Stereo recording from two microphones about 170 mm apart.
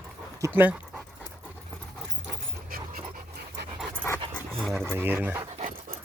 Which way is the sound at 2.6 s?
60° right (ahead or behind).